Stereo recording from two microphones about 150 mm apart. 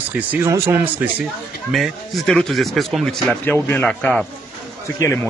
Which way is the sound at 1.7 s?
Centre (ahead or behind).